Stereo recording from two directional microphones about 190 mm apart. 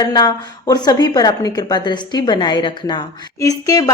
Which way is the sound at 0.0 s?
20° left (ahead or behind).